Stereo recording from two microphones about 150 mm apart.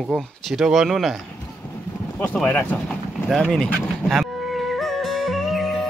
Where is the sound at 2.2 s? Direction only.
10° left (ahead or behind).